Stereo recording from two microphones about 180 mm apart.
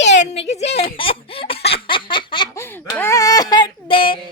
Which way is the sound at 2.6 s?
15° left (ahead or behind).